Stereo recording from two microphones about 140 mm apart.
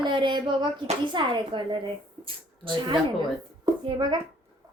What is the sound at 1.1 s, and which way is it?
Speech, 35° right (ahead or behind).